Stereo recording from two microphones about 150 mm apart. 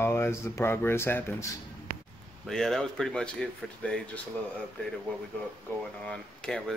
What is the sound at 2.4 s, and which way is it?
Speech, centre (ahead or behind).